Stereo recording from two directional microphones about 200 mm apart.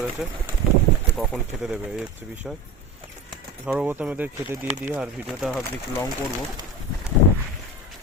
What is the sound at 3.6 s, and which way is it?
Speech, 5° right (ahead or behind).